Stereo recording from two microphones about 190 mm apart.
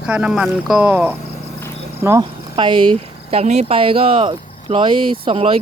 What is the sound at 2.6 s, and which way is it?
Speech, 25° right (ahead or behind).